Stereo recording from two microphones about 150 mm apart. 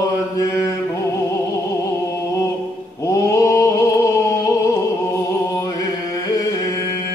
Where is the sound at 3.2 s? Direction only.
20° left (ahead or behind).